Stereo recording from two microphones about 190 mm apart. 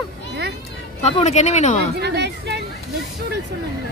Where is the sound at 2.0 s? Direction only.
60° right (ahead or behind).